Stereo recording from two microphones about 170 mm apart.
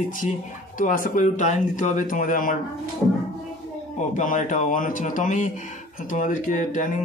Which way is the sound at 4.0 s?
50° left (ahead or behind).